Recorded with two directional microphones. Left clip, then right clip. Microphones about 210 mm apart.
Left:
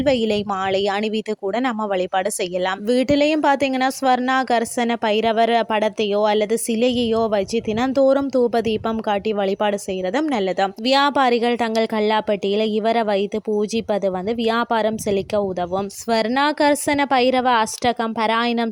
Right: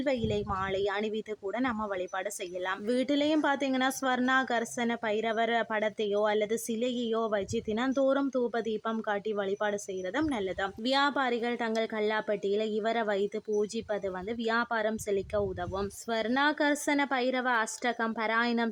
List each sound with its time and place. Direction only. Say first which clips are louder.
0.0 s a woman's voice: left 12 dB; 35° left (ahead or behind)